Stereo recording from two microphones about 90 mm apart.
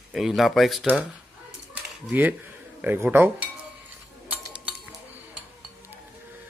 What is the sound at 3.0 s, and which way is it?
Speech, 25° right (ahead or behind).